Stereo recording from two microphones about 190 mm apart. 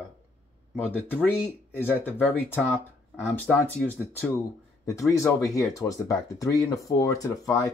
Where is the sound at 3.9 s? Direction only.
10° left (ahead or behind).